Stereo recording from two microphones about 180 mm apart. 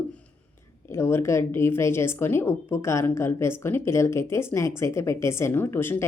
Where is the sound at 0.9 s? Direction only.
15° left (ahead or behind).